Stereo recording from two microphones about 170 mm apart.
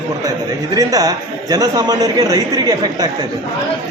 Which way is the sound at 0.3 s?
20° right (ahead or behind).